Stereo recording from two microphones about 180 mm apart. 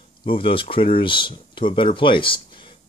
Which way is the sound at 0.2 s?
30° left (ahead or behind).